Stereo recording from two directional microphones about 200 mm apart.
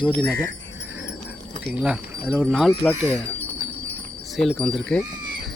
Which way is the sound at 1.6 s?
5° right (ahead or behind).